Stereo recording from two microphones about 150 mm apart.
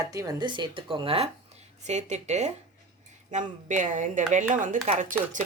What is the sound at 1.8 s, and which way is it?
Speech, 50° right (ahead or behind).